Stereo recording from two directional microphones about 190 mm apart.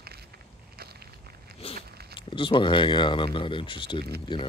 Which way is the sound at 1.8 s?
55° right (ahead or behind).